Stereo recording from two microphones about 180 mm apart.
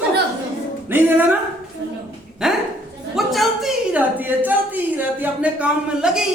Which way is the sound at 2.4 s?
5° right (ahead or behind).